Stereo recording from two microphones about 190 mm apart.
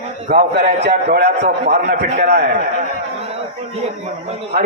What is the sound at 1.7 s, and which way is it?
Speech, 40° right (ahead or behind).